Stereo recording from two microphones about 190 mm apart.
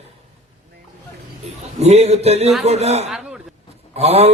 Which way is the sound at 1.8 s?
35° right (ahead or behind).